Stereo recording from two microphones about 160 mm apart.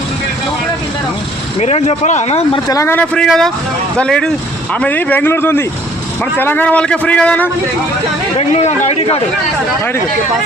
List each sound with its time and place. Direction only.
1.5 s speech: 40° left (ahead or behind)
2.6 s a man's voice: 20° left (ahead or behind)
8.4 s speech: 40° left (ahead or behind)